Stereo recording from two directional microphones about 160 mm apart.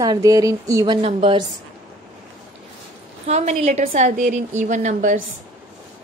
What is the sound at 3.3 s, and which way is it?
A woman's voice, 45° right (ahead or behind).